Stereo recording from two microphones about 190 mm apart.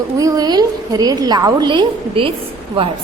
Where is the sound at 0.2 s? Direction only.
20° right (ahead or behind).